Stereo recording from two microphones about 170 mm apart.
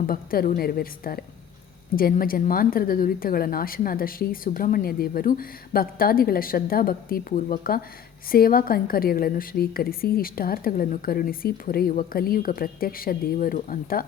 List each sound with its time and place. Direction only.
0.0 s a woman's voice: 60° left (ahead or behind)